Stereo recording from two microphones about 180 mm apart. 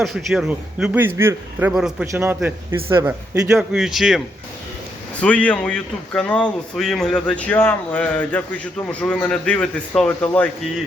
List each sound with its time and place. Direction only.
0.0 s a man's voice: centre (ahead or behind); by 3.6 s 15° right (ahead or behind)
3.6 s speech: 5° right (ahead or behind)
5.2 s speech: 5° left (ahead or behind)